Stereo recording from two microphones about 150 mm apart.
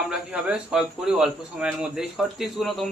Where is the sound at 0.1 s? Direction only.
5° right (ahead or behind).